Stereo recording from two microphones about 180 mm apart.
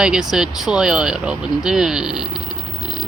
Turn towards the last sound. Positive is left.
turn(degrees=0)  # may be behind; listen again after turning